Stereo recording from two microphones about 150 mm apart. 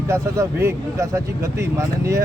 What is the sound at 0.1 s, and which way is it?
Speech, 20° right (ahead or behind).